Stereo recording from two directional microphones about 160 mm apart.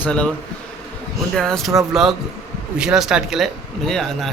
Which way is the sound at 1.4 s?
Centre (ahead or behind).